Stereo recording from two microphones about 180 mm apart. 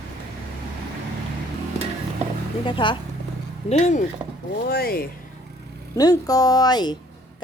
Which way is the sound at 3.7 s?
40° left (ahead or behind).